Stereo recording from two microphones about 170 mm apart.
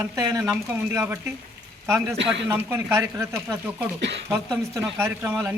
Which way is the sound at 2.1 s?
90° right.